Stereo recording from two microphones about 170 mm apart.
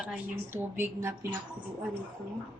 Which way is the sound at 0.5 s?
15° right (ahead or behind).